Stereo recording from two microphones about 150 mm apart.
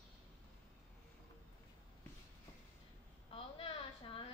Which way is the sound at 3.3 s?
40° left (ahead or behind).